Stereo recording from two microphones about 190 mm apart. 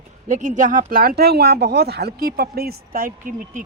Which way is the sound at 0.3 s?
40° right (ahead or behind).